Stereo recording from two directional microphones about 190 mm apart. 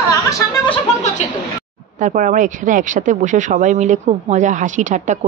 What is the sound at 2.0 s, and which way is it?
A woman's voice, 40° right (ahead or behind).